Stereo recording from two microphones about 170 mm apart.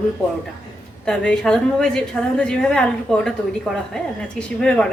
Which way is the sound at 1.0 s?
5° left (ahead or behind).